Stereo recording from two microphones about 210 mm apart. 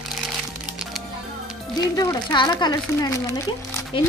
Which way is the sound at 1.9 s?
20° left (ahead or behind).